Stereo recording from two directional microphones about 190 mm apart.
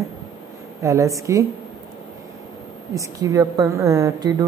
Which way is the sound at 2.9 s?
15° right (ahead or behind).